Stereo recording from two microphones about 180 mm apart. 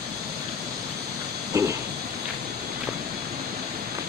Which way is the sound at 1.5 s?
15° right (ahead or behind).